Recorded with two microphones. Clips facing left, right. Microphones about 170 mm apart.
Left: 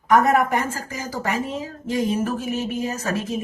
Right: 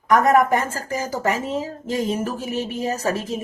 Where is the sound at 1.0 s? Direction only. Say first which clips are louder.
Right 1 dB; 40° right (ahead or behind).